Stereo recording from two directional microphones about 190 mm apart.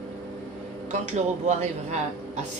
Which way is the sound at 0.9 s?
40° right (ahead or behind).